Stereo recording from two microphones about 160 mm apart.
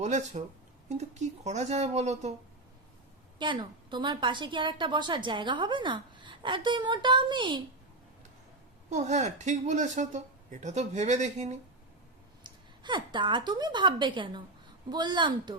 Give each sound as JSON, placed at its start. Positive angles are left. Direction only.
{"t": 0.0, "sound": "speech", "side_deg": -45}
{"t": 3.3, "sound": "a woman's voice", "side_deg": -30}
{"t": 8.9, "sound": "speech", "side_deg": -45}
{"t": 12.4, "sound": "a woman's voice", "side_deg": -30}